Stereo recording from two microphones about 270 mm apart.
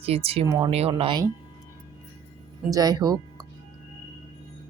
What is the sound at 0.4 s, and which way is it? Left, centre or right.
Speech, centre.